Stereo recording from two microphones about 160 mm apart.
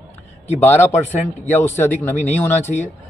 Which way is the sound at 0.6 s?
15° left (ahead or behind).